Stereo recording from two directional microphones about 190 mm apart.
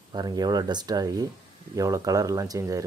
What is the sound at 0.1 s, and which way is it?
Speech, 20° right (ahead or behind).